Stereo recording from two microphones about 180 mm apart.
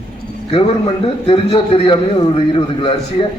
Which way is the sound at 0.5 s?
35° left (ahead or behind).